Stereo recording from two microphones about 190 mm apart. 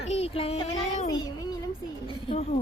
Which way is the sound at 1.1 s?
20° left (ahead or behind).